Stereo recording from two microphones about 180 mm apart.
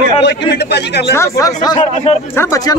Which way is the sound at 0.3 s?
65° left (ahead or behind).